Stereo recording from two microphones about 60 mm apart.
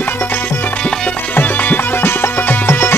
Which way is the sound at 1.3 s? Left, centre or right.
Left.